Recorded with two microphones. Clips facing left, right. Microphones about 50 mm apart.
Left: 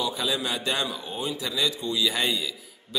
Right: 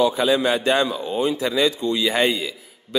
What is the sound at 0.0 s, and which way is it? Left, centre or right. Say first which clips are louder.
A man's voice: right 10 dB; right.